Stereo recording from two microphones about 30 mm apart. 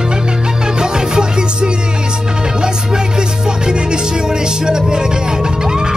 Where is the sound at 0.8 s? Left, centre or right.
Right.